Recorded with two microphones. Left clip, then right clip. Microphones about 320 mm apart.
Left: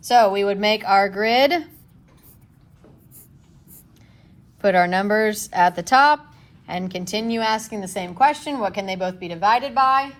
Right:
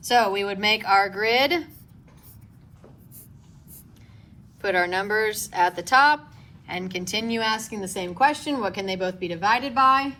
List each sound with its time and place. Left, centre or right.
0.0 s a woman's voice: centre
4.6 s a woman's voice: centre